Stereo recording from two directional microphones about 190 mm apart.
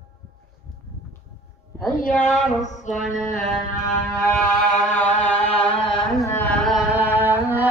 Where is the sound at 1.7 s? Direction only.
15° left (ahead or behind).